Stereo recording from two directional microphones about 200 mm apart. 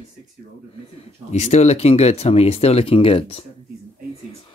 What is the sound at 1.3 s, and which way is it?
Speech, 35° left (ahead or behind).